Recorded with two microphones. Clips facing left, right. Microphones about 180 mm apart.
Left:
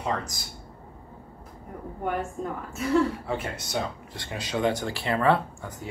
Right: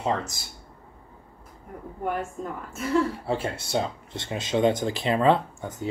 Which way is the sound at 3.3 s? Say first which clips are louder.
Right 3 dB; 30° right (ahead or behind).